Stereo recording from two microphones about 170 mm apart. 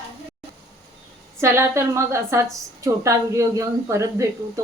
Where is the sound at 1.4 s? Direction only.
15° right (ahead or behind).